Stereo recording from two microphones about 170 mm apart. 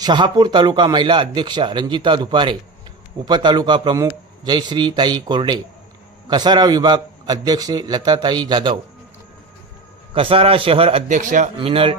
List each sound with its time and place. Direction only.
0.0 s a man's voice: 25° right (ahead or behind)
10.2 s a man's voice: 35° right (ahead or behind)
11.1 s speech: 50° right (ahead or behind)
11.5 s a man's voice: 30° right (ahead or behind)